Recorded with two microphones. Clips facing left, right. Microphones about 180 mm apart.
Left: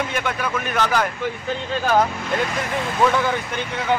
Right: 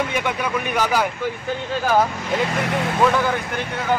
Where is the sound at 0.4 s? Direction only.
15° right (ahead or behind).